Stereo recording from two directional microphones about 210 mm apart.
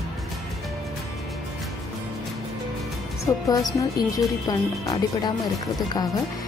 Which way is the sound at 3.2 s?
15° left (ahead or behind).